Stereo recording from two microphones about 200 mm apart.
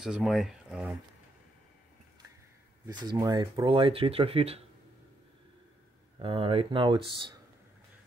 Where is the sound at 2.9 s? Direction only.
20° right (ahead or behind).